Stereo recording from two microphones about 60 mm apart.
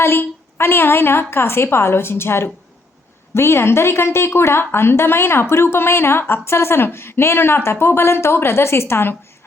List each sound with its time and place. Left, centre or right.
0.0 s a woman's voice: left